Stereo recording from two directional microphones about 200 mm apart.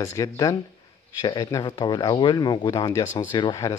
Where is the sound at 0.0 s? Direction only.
15° left (ahead or behind).